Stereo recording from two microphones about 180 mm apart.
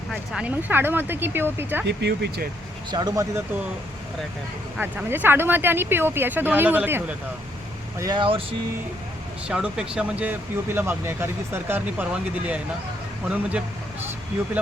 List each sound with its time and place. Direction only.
0.1 s speech: 5° right (ahead or behind)
1.9 s speech: 70° right (ahead or behind)
2.9 s speech: 20° right (ahead or behind)
4.8 s speech: 10° right (ahead or behind)
7.9 s speech: 20° right (ahead or behind)
9.5 s speech: 5° right (ahead or behind)
13.2 s speech: 10° right (ahead or behind)